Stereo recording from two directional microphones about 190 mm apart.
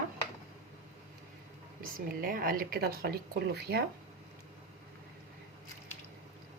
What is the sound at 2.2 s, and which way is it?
Speech, 50° right (ahead or behind).